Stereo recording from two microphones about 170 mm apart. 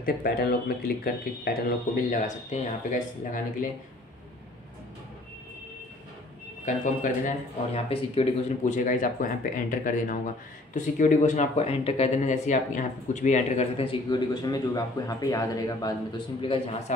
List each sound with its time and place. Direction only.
0.0 s speech: 65° left (ahead or behind)
2.0 s speech: 45° left (ahead or behind)
6.6 s speech: 50° left (ahead or behind)
7.9 s speech: 35° left (ahead or behind)
16.3 s speech: 35° left (ahead or behind)